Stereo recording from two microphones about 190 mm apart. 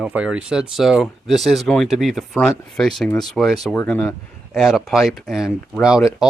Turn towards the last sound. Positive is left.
turn(degrees=0)  # may be behind; listen again after turning